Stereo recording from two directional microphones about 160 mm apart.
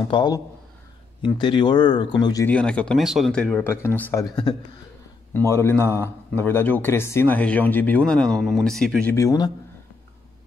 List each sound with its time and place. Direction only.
0.0 s speech: 25° left (ahead or behind)
2.4 s a man's voice: 10° left (ahead or behind)
9.1 s speech: 20° left (ahead or behind)